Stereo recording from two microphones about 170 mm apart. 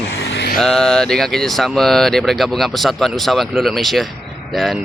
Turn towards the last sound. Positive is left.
turn(degrees=0)  # may be behind; listen again after turning